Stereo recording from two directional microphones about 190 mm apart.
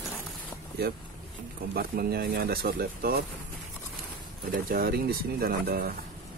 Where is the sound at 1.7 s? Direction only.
50° right (ahead or behind).